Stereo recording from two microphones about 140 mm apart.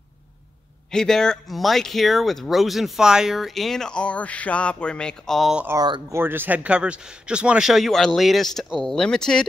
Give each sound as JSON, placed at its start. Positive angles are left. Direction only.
{"t": 0.9, "sound": "speech", "side_deg": 5}
{"t": 5.8, "sound": "speech", "side_deg": -35}
{"t": 6.1, "sound": "speech", "side_deg": -15}